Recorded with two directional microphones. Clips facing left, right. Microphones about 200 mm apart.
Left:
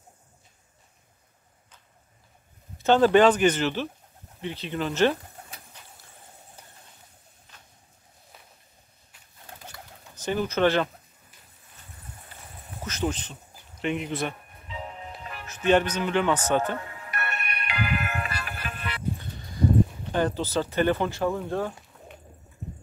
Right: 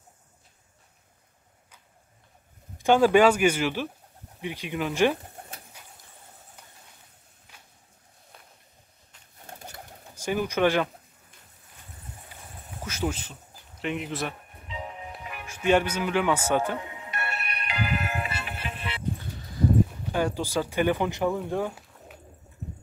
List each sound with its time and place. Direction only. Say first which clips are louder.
2.8 s speech: left 1 dB; 10° right (ahead or behind)
5.7 s vehicle: even; 10° right (ahead or behind)
7.5 s a sound: even; 10° right (ahead or behind)
9.5 s pigeon: right 2 dB; 45° right (ahead or behind)
10.1 s speech: even; 10° right (ahead or behind)
12.3 s clip-clop: even; 10° right (ahead or behind)
12.8 s speech: left 1 dB; 10° right (ahead or behind)
14.7 s music: even; 15° right (ahead or behind)
20.1 s speech: left 1 dB; 10° right (ahead or behind)